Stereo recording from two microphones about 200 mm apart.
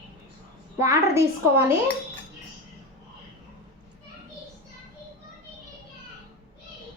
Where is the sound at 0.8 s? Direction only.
15° right (ahead or behind).